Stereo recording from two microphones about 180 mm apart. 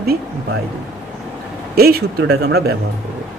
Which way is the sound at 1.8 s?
60° right (ahead or behind).